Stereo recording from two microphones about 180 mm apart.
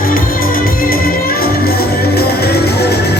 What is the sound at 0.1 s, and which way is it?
Music, 55° left (ahead or behind).